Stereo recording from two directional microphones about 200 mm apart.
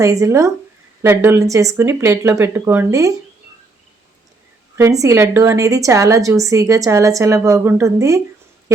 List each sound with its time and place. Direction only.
0.0 s a woman's voice: 15° right (ahead or behind)
4.8 s a woman's voice: 15° right (ahead or behind)